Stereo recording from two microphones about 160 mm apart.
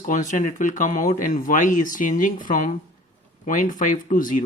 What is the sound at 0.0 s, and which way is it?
Speech, 55° left (ahead or behind).